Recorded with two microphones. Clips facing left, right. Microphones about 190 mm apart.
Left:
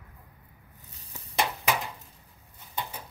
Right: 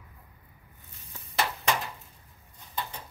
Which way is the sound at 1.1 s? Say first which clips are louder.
Left 1 dB; 15° left (ahead or behind).